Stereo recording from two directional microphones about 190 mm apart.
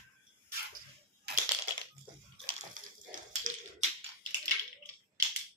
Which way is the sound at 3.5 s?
40° right (ahead or behind).